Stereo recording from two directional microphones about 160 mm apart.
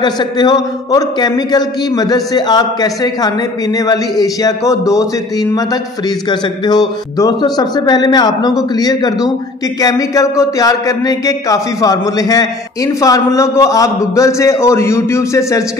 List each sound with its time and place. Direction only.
0.0 s a man's voice: 25° left (ahead or behind)
7.2 s a man's voice: 25° left (ahead or behind)